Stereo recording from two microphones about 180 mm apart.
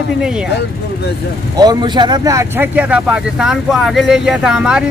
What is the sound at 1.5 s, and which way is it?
Speech, 25° right (ahead or behind).